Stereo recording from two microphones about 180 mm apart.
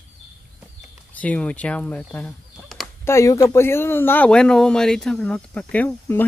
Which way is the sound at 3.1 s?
15° left (ahead or behind).